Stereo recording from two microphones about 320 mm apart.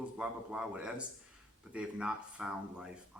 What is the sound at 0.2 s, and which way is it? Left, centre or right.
A man's voice, centre.